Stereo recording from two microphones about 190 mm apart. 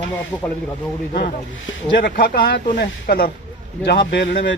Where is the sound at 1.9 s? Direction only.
55° left (ahead or behind).